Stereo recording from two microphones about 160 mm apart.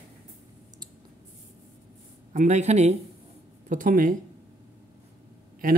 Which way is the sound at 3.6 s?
55° right (ahead or behind).